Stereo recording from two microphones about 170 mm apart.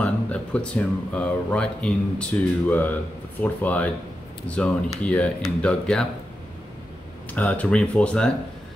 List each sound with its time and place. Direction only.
0.0 s speech: 5° left (ahead or behind)
7.3 s speech: 10° left (ahead or behind)